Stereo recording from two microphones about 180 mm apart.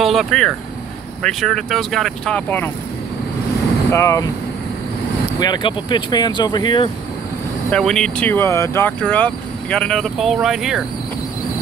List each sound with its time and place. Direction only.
0.0 s speech: centre (ahead or behind)
3.9 s speech: 15° left (ahead or behind)
5.4 s speech: 25° left (ahead or behind)
7.7 s speech: 5° left (ahead or behind)